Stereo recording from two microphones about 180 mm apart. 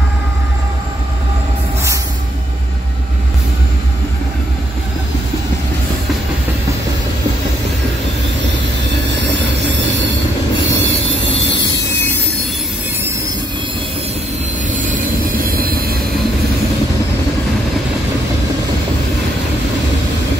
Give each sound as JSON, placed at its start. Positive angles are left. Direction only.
{"t": 10.7, "sound": "train", "side_deg": -85}
{"t": 11.1, "sound": "train", "side_deg": 90}
{"t": 15.4, "sound": "train", "side_deg": -55}